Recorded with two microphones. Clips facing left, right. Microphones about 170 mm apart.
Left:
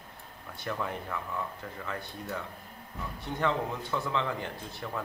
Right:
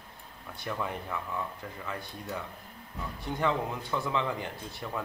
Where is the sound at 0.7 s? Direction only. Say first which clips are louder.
Even; 5° right (ahead or behind).